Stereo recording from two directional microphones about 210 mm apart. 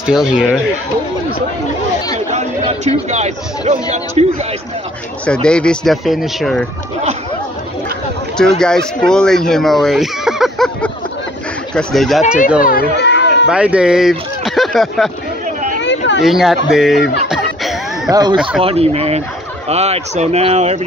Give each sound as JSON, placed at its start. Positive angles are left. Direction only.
{"t": 0.0, "sound": "speech", "side_deg": -5}
{"t": 3.1, "sound": "a man's voice", "side_deg": -35}
{"t": 5.2, "sound": "speech", "side_deg": 5}
{"t": 8.4, "sound": "speech", "side_deg": 5}
{"t": 12.6, "sound": "a sound", "side_deg": 50}
{"t": 13.5, "sound": "speech", "side_deg": -5}
{"t": 15.8, "sound": "chatter", "side_deg": 60}
{"t": 16.3, "sound": "speech", "side_deg": 0}
{"t": 17.3, "sound": "music", "side_deg": 0}
{"t": 18.1, "sound": "a man's voice", "side_deg": -20}